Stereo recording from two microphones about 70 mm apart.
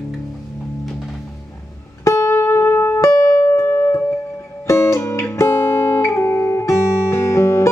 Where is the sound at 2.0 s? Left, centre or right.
Left.